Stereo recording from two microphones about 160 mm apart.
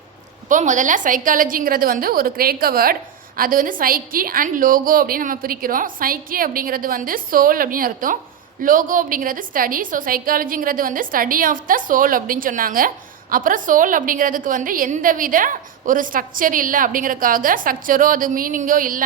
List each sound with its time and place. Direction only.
0.4 s a woman's voice: 50° right (ahead or behind)